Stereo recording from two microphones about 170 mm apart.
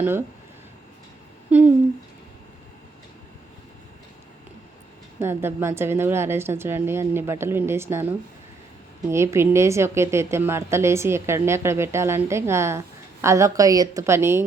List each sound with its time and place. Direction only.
0.0 s a woman's voice: 10° right (ahead or behind)
1.5 s speech: 10° right (ahead or behind)
5.2 s a woman's voice: 15° right (ahead or behind)